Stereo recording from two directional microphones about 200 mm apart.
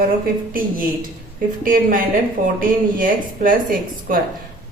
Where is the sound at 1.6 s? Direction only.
45° right (ahead or behind).